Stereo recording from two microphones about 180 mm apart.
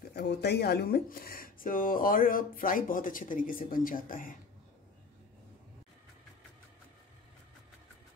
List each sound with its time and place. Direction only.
0.1 s speech: 65° left (ahead or behind); by 4.4 s 50° left (ahead or behind)